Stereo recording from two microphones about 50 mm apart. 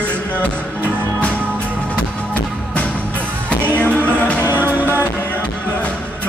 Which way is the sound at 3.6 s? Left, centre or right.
Left.